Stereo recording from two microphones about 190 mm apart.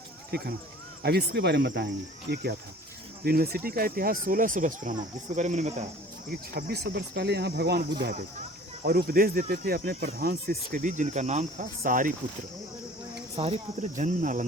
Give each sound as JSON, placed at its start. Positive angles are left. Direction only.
{"t": 0.3, "sound": "speech", "side_deg": -55}
{"t": 6.5, "sound": "speech", "side_deg": -55}
{"t": 13.3, "sound": "cricket", "side_deg": -35}